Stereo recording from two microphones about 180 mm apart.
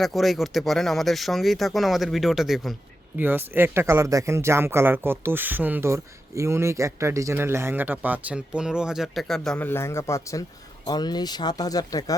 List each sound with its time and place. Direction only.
0.0 s speech: centre (ahead or behind); by 12.1 s 20° left (ahead or behind)